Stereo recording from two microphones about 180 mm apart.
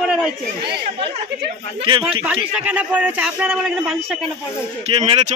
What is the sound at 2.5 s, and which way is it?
A man's voice, 5° right (ahead or behind).